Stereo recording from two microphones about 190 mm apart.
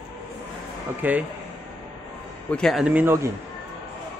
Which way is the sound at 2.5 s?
5° left (ahead or behind).